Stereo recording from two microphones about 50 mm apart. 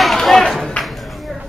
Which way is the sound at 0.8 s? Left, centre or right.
Centre.